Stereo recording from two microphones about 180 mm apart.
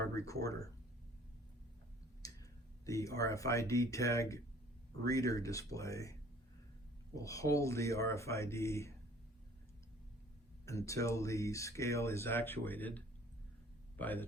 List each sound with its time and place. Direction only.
0.0 s speech: 15° left (ahead or behind)
2.2 s clicking: 20° left (ahead or behind)
2.8 s speech: 15° left (ahead or behind)
7.2 s speech: 20° left (ahead or behind)
10.7 s speech: 15° left (ahead or behind)
14.0 s speech: 10° left (ahead or behind)